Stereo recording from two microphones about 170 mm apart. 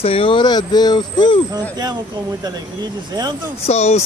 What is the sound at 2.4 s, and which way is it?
Speech, 25° right (ahead or behind).